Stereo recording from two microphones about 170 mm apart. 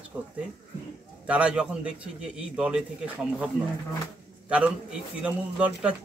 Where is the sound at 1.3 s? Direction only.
5° right (ahead or behind).